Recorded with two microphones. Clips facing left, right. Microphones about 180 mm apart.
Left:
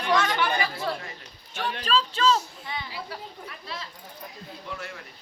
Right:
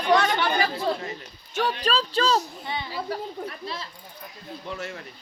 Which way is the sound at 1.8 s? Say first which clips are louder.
Left 4 dB; 40° right (ahead or behind).